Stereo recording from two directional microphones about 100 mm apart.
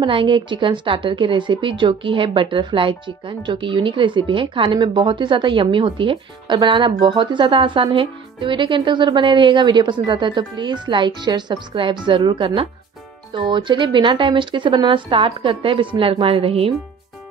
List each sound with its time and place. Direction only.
0.0 s a woman's voice: 55° right (ahead or behind)